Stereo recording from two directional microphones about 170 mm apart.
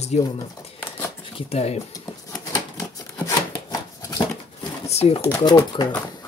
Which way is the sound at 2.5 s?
20° left (ahead or behind).